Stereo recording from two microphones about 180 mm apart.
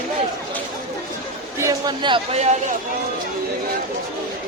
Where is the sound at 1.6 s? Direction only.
20° right (ahead or behind).